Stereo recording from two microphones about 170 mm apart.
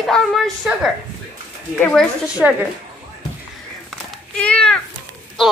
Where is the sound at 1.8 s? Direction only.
5° left (ahead or behind).